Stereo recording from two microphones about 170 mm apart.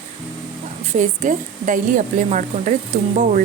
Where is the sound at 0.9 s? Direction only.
50° right (ahead or behind).